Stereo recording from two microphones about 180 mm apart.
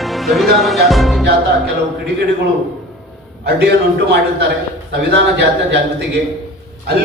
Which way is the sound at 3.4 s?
65° right (ahead or behind).